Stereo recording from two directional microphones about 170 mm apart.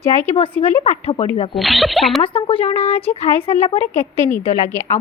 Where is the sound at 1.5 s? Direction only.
Centre (ahead or behind).